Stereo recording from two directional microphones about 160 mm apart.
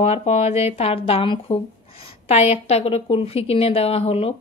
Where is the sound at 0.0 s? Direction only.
40° left (ahead or behind).